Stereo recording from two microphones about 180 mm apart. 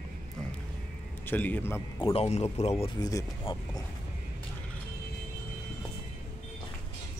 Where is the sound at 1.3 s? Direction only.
10° left (ahead or behind).